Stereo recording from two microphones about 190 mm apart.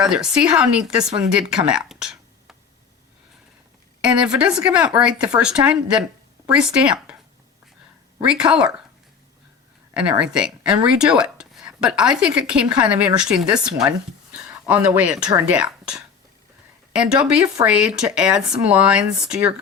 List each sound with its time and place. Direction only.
0.0 s speech: 5° right (ahead or behind)
4.0 s speech: 5° right (ahead or behind)
8.3 s speech: 5° right (ahead or behind)
9.9 s speech: 5° right (ahead or behind)